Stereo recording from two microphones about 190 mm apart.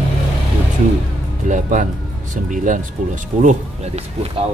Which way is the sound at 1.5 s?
40° right (ahead or behind).